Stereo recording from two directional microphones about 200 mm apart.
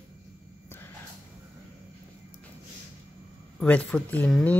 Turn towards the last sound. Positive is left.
turn(degrees=5)  # may be behind; listen again after turning